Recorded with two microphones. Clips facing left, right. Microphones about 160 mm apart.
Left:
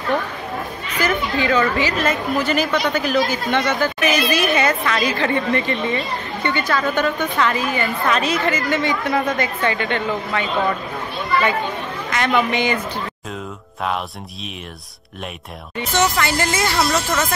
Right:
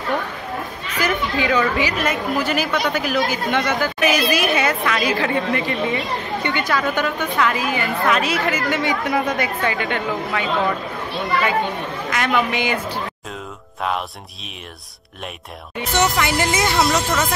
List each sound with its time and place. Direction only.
1.0 s a woman's voice: 10° right (ahead or behind)
12.1 s a man's voice: 5° right (ahead or behind)
15.9 s a woman's voice: 15° right (ahead or behind)